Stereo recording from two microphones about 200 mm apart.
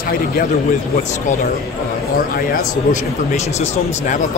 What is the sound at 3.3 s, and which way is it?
Speech, 35° left (ahead or behind).